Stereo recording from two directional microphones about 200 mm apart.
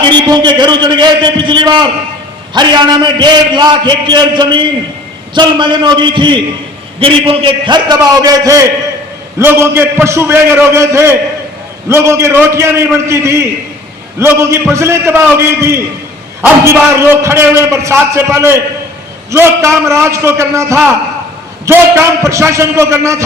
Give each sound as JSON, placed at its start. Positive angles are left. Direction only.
{"t": 0.1, "sound": "a man's voice", "side_deg": -20}